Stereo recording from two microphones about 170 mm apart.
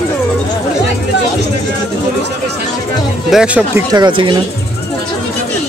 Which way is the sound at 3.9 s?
25° right (ahead or behind).